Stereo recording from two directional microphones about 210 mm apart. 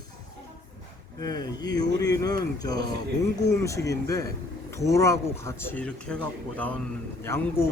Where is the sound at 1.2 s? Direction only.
20° left (ahead or behind).